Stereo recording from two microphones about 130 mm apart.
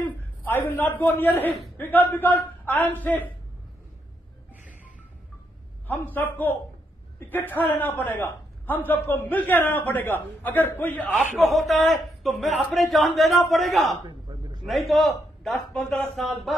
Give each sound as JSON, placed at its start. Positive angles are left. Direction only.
{"t": 0.5, "sound": "a man's voice", "side_deg": 15}
{"t": 4.6, "sound": "music", "side_deg": 85}
{"t": 5.9, "sound": "a man's voice", "side_deg": 15}
{"t": 11.3, "sound": "a man's voice", "side_deg": 0}
{"t": 14.0, "sound": "a sound", "side_deg": -35}
{"t": 14.7, "sound": "a man's voice", "side_deg": 0}